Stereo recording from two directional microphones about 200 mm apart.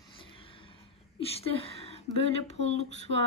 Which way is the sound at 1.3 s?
30° left (ahead or behind).